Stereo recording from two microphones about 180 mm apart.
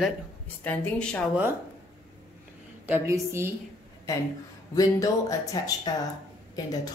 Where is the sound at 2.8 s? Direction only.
15° right (ahead or behind).